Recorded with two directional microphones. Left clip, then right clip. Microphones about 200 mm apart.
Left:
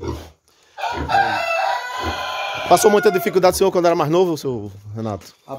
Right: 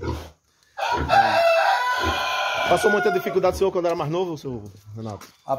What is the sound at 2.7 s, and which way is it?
Speech, 45° left (ahead or behind).